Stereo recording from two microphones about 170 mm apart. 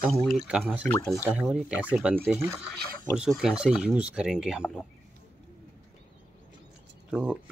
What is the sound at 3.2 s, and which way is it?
Speech, 5° right (ahead or behind).